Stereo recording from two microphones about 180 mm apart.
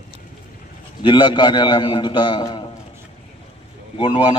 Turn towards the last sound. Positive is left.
turn(degrees=30)  # may be behind; listen again after turning